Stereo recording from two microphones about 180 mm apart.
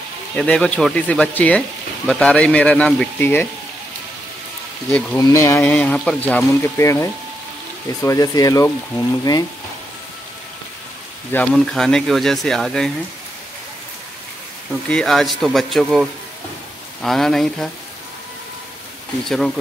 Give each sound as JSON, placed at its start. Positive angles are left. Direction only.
{"t": 0.4, "sound": "speech", "side_deg": 5}
{"t": 4.9, "sound": "speech", "side_deg": 10}
{"t": 11.3, "sound": "speech", "side_deg": 5}
{"t": 14.9, "sound": "speech", "side_deg": 5}
{"t": 19.2, "sound": "speech", "side_deg": 0}